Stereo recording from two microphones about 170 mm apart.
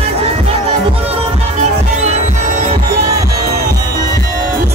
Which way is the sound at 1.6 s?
40° right (ahead or behind).